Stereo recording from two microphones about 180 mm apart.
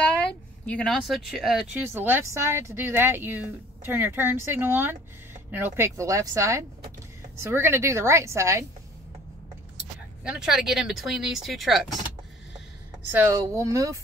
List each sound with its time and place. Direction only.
0.7 s speech: 5° left (ahead or behind); by 8.6 s 15° right (ahead or behind)
10.2 s speech: 5° right (ahead or behind)
13.1 s speech: 15° right (ahead or behind)